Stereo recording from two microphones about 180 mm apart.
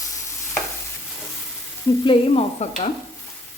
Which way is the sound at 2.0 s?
35° left (ahead or behind).